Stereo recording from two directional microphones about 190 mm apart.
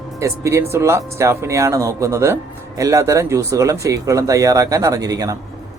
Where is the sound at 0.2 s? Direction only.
15° right (ahead or behind).